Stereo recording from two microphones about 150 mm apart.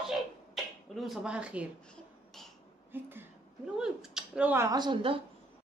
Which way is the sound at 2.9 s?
15° right (ahead or behind).